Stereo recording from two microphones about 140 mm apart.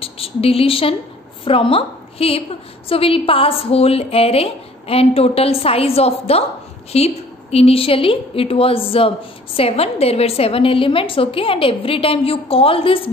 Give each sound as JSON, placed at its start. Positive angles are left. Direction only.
{"t": 0.0, "sound": "a woman's voice", "side_deg": 45}